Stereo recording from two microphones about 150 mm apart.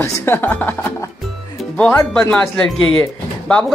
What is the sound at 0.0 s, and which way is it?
Speech, 20° left (ahead or behind).